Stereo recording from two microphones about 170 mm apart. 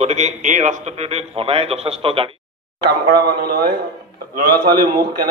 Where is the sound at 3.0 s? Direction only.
65° right (ahead or behind).